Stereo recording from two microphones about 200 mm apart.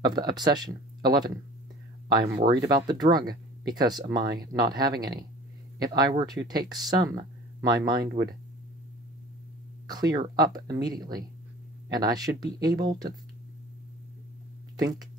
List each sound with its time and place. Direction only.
0.0 s speech: 20° right (ahead or behind)
8.0 s speech: 55° right (ahead or behind)
9.8 s speech: 20° right (ahead or behind)